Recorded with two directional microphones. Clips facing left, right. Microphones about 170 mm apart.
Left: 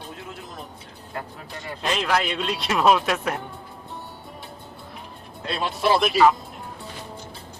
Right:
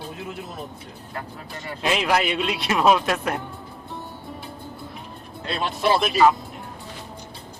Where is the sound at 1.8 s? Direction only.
10° right (ahead or behind).